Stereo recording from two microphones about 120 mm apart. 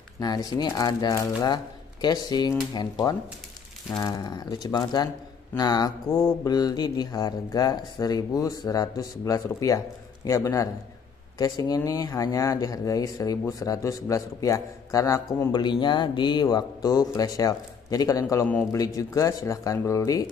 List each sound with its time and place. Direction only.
0.2 s speech: 35° left (ahead or behind)
15.8 s speech: 40° left (ahead or behind)